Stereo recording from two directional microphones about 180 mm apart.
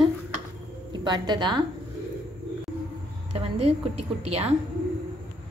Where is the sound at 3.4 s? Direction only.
35° right (ahead or behind).